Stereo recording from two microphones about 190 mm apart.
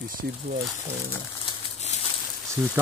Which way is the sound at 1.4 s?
35° left (ahead or behind).